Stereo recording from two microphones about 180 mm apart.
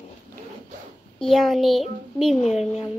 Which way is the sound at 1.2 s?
Centre (ahead or behind).